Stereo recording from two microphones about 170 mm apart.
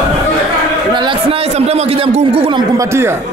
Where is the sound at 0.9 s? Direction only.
30° right (ahead or behind).